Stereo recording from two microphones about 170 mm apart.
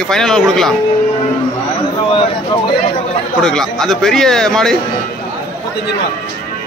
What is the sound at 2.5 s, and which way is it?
Speech, 25° left (ahead or behind).